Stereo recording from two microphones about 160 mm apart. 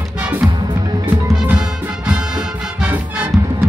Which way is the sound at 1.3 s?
5° right (ahead or behind).